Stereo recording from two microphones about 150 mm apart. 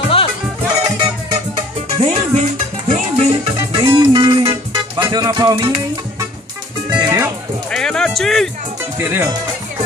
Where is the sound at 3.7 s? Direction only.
35° right (ahead or behind).